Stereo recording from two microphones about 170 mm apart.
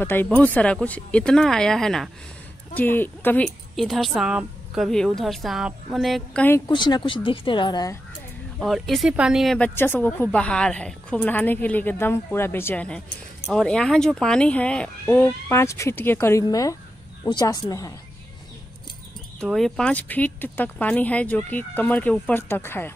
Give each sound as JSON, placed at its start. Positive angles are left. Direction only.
{"t": 0.0, "sound": "a woman's voice", "side_deg": 10}
{"t": 6.7, "sound": "a woman's voice", "side_deg": 25}
{"t": 8.5, "sound": "a woman's voice", "side_deg": 0}
{"t": 9.8, "sound": "a woman's voice", "side_deg": 10}
{"t": 19.4, "sound": "speech", "side_deg": 0}